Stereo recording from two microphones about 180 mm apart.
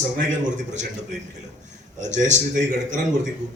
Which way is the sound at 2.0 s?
40° right (ahead or behind).